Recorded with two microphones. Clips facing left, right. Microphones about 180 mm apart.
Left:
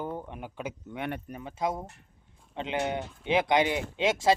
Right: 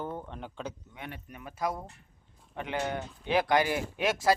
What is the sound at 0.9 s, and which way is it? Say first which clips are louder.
Speech: left 9 dB; 70° left (ahead or behind).